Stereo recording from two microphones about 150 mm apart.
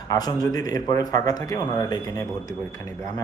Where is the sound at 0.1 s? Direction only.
25° left (ahead or behind).